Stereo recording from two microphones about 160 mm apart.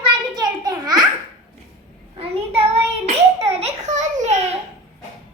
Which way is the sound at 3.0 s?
40° right (ahead or behind).